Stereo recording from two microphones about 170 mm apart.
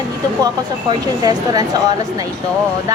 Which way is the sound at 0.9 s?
20° right (ahead or behind).